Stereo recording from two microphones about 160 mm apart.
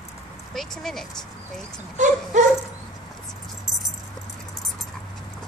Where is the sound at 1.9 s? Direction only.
50° right (ahead or behind).